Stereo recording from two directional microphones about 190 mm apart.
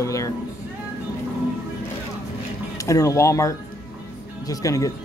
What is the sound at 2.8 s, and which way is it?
Speech, 15° left (ahead or behind).